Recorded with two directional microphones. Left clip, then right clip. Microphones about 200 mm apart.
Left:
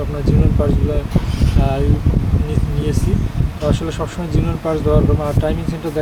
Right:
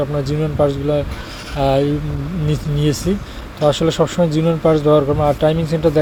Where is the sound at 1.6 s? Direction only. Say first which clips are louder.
Right 6 dB; 30° right (ahead or behind).